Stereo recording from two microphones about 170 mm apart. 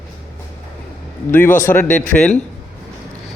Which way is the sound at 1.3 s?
10° left (ahead or behind).